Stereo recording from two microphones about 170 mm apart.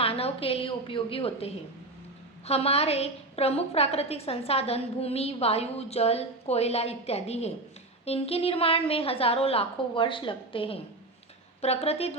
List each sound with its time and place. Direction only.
0.0 s a woman's voice: 35° left (ahead or behind)